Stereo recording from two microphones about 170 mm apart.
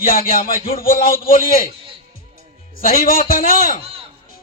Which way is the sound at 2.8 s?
55° left (ahead or behind).